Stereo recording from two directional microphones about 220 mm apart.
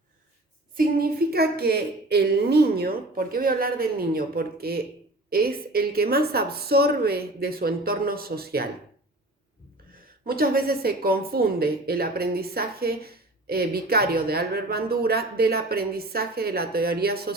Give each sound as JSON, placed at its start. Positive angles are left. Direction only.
{"t": 0.8, "sound": "a woman's voice", "side_deg": -45}
{"t": 10.2, "sound": "a woman's voice", "side_deg": -45}